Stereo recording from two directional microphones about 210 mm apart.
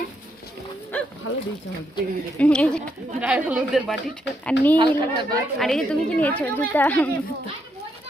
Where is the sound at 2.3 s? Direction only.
5° left (ahead or behind).